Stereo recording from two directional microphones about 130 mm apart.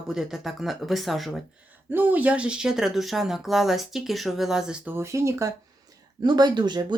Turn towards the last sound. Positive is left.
turn(degrees=-35)  # may be behind; listen again after turning